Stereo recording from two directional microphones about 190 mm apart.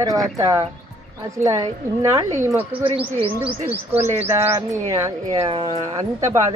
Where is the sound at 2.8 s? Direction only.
30° right (ahead or behind).